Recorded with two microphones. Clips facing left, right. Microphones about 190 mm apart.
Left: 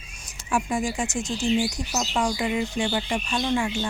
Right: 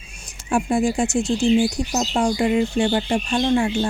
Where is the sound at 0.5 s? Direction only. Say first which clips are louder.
Right 6 dB; 35° right (ahead or behind).